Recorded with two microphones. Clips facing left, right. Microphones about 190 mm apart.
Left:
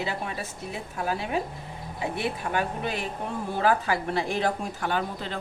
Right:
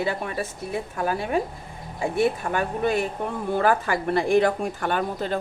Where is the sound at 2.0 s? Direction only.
45° right (ahead or behind).